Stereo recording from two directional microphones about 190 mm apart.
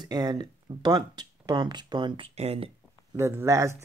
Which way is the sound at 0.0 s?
20° right (ahead or behind).